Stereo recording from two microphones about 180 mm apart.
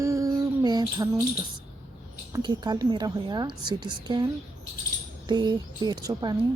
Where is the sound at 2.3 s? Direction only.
20° right (ahead or behind).